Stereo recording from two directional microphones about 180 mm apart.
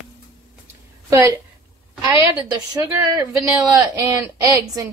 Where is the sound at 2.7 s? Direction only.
15° right (ahead or behind).